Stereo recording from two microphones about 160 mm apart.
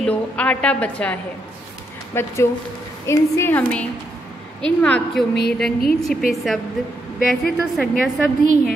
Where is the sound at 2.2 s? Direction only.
15° left (ahead or behind).